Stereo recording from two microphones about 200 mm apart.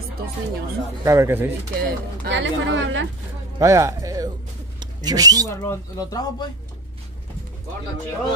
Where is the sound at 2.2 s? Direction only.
65° right (ahead or behind).